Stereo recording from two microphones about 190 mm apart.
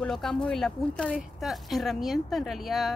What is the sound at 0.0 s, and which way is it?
Speech, centre (ahead or behind).